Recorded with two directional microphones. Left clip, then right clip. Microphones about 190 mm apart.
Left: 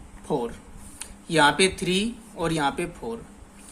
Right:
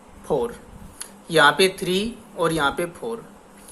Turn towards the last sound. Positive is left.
turn(degrees=20)  # may be behind; listen again after turning